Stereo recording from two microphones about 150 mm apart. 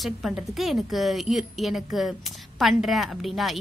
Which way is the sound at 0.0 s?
Centre (ahead or behind).